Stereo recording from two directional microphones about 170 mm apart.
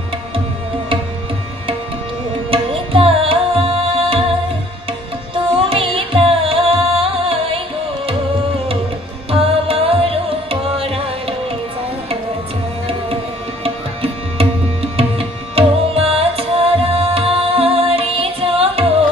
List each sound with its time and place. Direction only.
2.5 s tabla: 35° right (ahead or behind)
5.3 s music: 30° right (ahead or behind)
14.0 s music: 35° right (ahead or behind)